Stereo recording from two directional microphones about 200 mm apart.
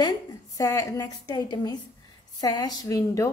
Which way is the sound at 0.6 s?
15° left (ahead or behind).